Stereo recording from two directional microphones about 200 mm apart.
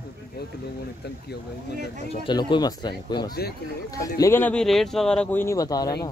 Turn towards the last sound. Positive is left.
turn(degrees=20)  # may be behind; listen again after turning